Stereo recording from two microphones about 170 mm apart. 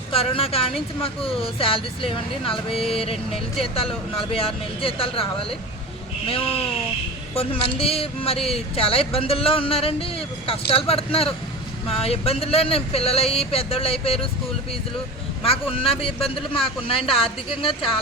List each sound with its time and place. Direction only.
0.1 s speech: 35° left (ahead or behind)
7.3 s speech: 35° left (ahead or behind)
15.4 s speech: 35° left (ahead or behind)